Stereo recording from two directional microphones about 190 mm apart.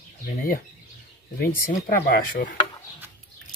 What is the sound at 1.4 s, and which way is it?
Chopping, 50° left (ahead or behind).